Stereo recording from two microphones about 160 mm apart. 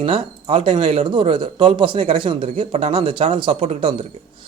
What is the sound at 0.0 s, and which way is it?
A man's voice, 35° right (ahead or behind).